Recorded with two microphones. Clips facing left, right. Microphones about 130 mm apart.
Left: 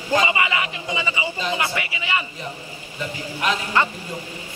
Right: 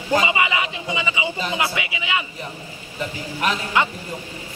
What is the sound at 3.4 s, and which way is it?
Speech, 10° right (ahead or behind).